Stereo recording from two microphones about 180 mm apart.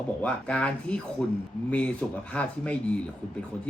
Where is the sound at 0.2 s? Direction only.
5° left (ahead or behind).